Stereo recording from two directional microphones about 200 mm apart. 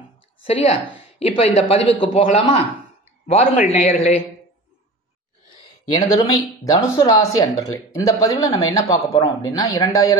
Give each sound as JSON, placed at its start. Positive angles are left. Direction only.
{"t": 0.5, "sound": "a man's voice", "side_deg": 30}
{"t": 5.9, "sound": "speech", "side_deg": 20}
{"t": 8.8, "sound": "speech", "side_deg": 25}
{"t": 9.6, "sound": "speech", "side_deg": 15}